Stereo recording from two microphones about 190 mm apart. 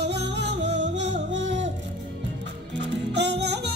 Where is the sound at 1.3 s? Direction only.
70° right (ahead or behind).